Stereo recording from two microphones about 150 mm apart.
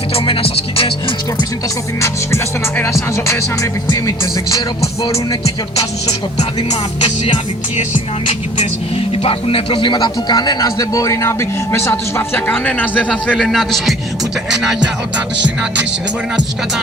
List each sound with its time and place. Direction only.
0.1 s music: 40° left (ahead or behind)
2.0 s speech: 15° left (ahead or behind)
8.5 s speech: 40° left (ahead or behind); by 13.9 s centre (ahead or behind)
14.5 s music: 5° right (ahead or behind)